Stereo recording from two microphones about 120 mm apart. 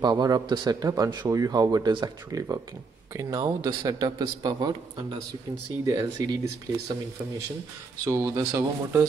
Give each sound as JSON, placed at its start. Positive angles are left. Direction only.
{"t": 0.0, "sound": "a man's voice", "side_deg": -35}
{"t": 5.9, "sound": "a man's voice", "side_deg": -30}
{"t": 8.0, "sound": "speech", "side_deg": -25}